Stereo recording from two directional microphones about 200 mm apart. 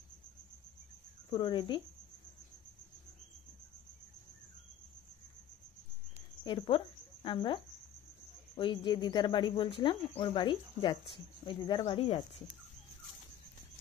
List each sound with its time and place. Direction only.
1.3 s speech: 25° left (ahead or behind)
6.1 s cricket: 25° left (ahead or behind)
7.2 s speech: 25° left (ahead or behind)